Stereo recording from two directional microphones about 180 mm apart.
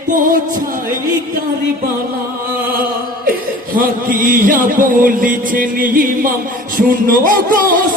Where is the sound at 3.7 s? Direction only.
50° right (ahead or behind).